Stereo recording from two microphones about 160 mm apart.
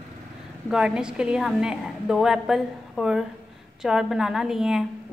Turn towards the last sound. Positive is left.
turn(degrees=-5)  # may be behind; listen again after turning